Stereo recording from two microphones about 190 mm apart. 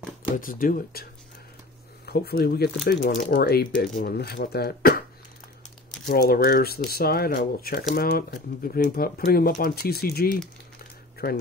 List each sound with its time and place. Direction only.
0.4 s speech: 50° left (ahead or behind)
2.0 s speech: 55° left (ahead or behind)
6.0 s speech: 50° left (ahead or behind)